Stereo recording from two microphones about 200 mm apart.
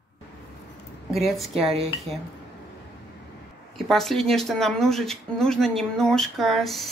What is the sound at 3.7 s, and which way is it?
A woman's voice, centre (ahead or behind).